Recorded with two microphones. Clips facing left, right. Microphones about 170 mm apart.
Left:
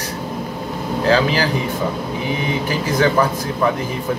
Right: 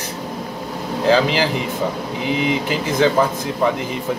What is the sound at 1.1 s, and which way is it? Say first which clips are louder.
Speech: right 1 dB; 20° right (ahead or behind).